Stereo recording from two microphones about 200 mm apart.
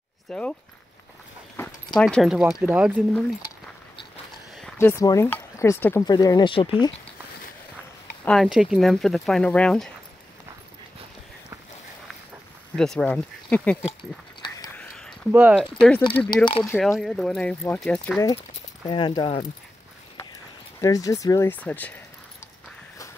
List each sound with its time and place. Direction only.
0.3 s speech: 5° left (ahead or behind)
1.6 s a sound: 5° left (ahead or behind)
2.6 s speech: 5° right (ahead or behind)
4.7 s speech: 15° left (ahead or behind)
8.3 s speech: centre (ahead or behind)
12.7 s speech: centre (ahead or behind)
14.8 s a sound: centre (ahead or behind)
15.3 s speech: 5° right (ahead or behind)
16.6 s speech: 10° left (ahead or behind)
18.9 s speech: 25° left (ahead or behind)
20.8 s speech: 15° left (ahead or behind)